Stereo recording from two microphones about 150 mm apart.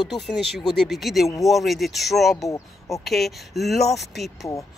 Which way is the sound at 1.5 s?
Centre (ahead or behind).